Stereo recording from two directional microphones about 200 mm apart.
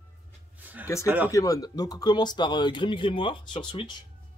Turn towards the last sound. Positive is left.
turn(degrees=25)  # may be behind; listen again after turning